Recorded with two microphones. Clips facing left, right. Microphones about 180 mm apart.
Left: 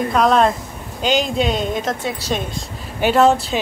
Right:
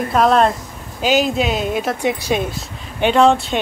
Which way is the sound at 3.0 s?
5° left (ahead or behind).